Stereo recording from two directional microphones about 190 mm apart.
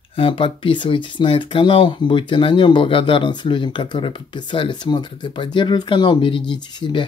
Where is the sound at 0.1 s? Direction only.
30° left (ahead or behind).